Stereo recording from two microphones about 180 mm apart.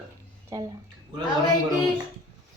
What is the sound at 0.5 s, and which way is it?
Speech, 20° right (ahead or behind).